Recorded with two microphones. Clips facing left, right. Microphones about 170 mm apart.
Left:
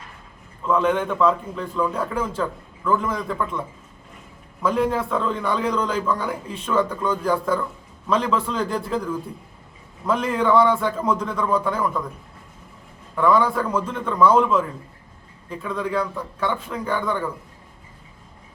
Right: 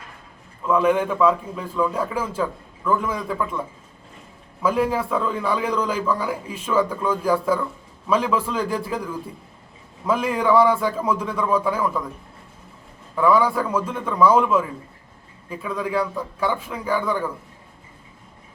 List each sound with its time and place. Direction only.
0.6 s a man's voice: 10° right (ahead or behind)
4.6 s a man's voice: 5° right (ahead or behind)
10.1 s a man's voice: 10° right (ahead or behind)
13.1 s a man's voice: 5° right (ahead or behind)